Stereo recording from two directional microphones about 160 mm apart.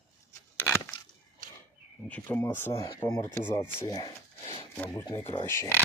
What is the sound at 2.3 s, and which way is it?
Speech, 15° left (ahead or behind).